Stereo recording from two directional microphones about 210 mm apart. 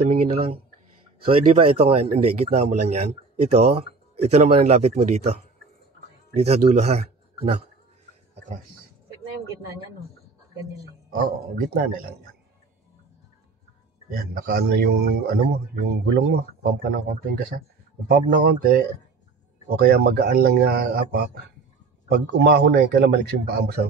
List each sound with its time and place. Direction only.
0.1 s speech: 30° right (ahead or behind)
11.1 s a man's voice: 45° right (ahead or behind)
14.1 s a man's voice: 45° right (ahead or behind)